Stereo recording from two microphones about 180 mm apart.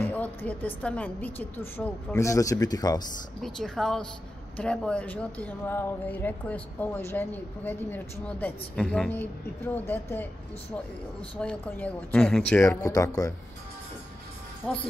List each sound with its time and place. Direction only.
0.0 s speech: 10° left (ahead or behind)
3.4 s a woman's voice: 5° left (ahead or behind)
11.3 s speech: 5° left (ahead or behind)
12.6 s speech: 15° left (ahead or behind)
14.6 s a woman's voice: 5° left (ahead or behind)